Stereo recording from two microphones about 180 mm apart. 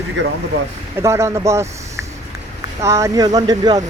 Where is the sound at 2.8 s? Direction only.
15° right (ahead or behind).